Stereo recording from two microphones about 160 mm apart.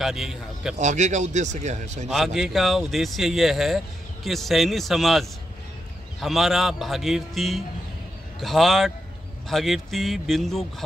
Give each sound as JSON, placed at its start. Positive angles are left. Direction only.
{"t": 0.0, "sound": "speech", "side_deg": 0}
{"t": 0.7, "sound": "speech", "side_deg": -45}
{"t": 2.0, "sound": "speech", "side_deg": 0}